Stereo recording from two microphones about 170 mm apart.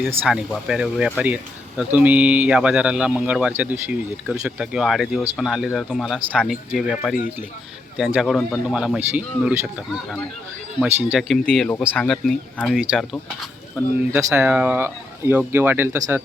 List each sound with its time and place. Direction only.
0.3 s speech: 5° right (ahead or behind)
10.8 s speech: 5° right (ahead or behind)
14.1 s speech: 15° right (ahead or behind)